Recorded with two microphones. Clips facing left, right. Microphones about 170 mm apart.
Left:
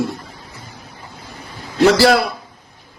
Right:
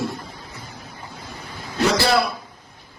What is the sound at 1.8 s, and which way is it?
Speech, 90° left.